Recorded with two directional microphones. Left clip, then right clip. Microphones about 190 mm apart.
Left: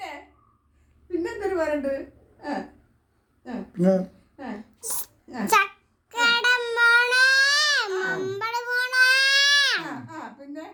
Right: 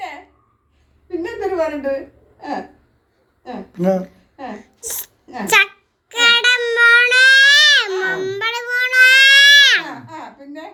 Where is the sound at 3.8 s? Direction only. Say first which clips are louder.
Right 4 dB; 40° left (ahead or behind).